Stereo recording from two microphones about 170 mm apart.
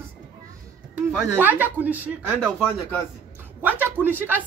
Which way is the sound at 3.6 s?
10° right (ahead or behind).